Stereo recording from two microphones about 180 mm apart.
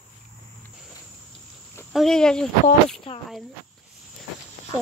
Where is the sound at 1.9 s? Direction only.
Centre (ahead or behind).